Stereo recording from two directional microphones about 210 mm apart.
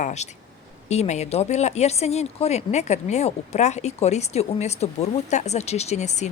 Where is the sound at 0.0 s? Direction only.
35° left (ahead or behind).